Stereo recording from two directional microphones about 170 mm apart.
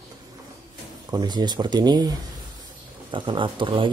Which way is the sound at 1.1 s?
25° right (ahead or behind).